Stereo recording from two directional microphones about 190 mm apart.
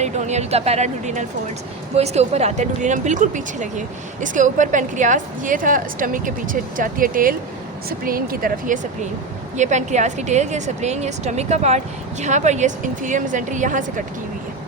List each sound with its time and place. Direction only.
0.0 s speech: 35° right (ahead or behind)